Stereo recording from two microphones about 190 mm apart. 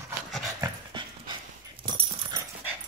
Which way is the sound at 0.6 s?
25° right (ahead or behind).